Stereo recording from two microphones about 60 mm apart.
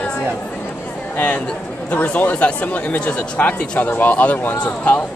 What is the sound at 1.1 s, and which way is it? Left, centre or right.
Speech, left.